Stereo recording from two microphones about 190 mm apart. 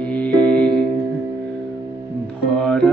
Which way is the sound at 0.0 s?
5° left (ahead or behind).